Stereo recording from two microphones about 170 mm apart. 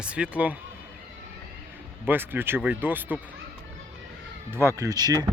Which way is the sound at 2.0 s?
10° right (ahead or behind).